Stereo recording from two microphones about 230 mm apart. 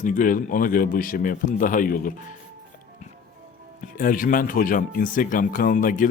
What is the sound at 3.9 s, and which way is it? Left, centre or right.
A man's voice, left.